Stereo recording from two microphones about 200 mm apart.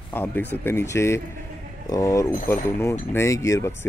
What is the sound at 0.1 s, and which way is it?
Speech, 10° left (ahead or behind).